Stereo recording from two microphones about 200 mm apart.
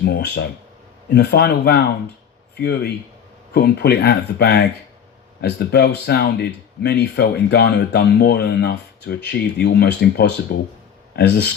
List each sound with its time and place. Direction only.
0.0 s speech: 55° left (ahead or behind)